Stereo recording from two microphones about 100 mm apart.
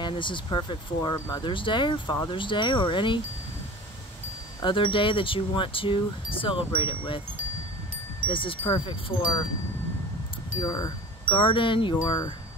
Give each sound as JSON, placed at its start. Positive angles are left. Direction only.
{"t": 0.0, "sound": "speech", "side_deg": 55}
{"t": 1.1, "sound": "speech", "side_deg": 30}
{"t": 1.4, "sound": "speech", "side_deg": 55}
{"t": 4.6, "sound": "speech", "side_deg": 60}
{"t": 8.3, "sound": "speech", "side_deg": 60}
{"t": 10.6, "sound": "speech", "side_deg": 35}
{"t": 11.2, "sound": "speech", "side_deg": 55}